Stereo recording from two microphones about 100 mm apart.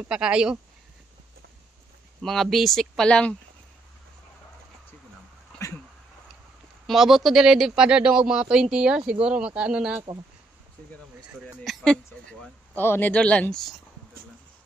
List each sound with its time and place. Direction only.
0.1 s a man's voice: 10° right (ahead or behind)
2.2 s speech: centre (ahead or behind)
5.5 s a sound: 10° left (ahead or behind)
6.9 s a man's voice: centre (ahead or behind)
11.6 s speech: 5° left (ahead or behind)
12.7 s speech: 20° left (ahead or behind)